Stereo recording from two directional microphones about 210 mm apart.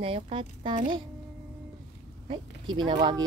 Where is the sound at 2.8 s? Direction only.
20° right (ahead or behind).